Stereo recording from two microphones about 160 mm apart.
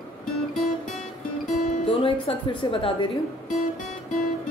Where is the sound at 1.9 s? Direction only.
35° left (ahead or behind).